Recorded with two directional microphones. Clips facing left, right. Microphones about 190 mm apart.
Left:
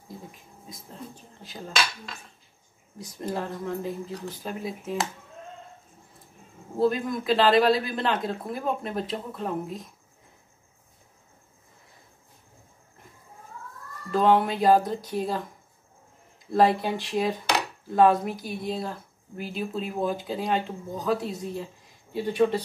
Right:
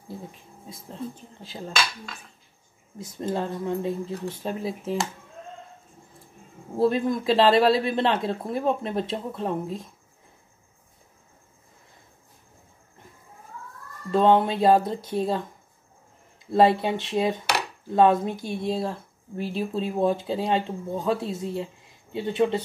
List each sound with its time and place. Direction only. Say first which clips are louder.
0.3 s speech: right 2 dB; 30° right (ahead or behind)
3.0 s speech: right 3 dB; 25° right (ahead or behind)
6.9 s speech: right 3 dB; 30° right (ahead or behind)
14.1 s speech: right 2 dB; 25° right (ahead or behind)
16.5 s speech: right 2 dB; 25° right (ahead or behind)